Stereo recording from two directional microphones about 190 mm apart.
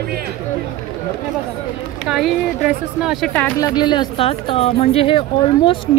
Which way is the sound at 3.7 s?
20° left (ahead or behind).